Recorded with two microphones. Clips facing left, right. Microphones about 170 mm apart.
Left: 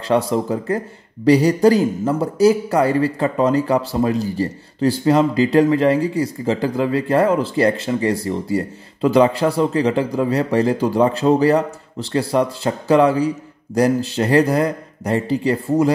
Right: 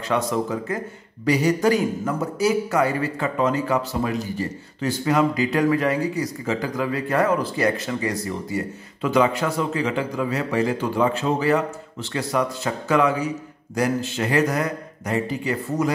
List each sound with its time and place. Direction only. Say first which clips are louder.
0.1 s a man's voice: left 5 dB; 30° left (ahead or behind)